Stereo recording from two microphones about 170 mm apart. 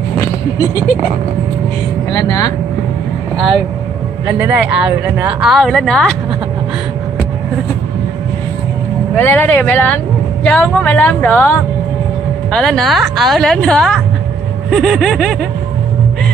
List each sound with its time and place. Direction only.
2.1 s speech: 20° left (ahead or behind)
4.3 s speech: 10° right (ahead or behind)
9.1 s a woman's voice: 10° left (ahead or behind)